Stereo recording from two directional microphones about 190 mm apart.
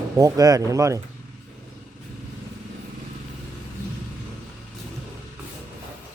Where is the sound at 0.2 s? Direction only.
20° right (ahead or behind).